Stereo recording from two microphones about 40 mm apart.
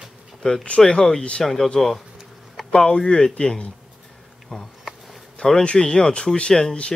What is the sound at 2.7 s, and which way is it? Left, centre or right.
Speech, left.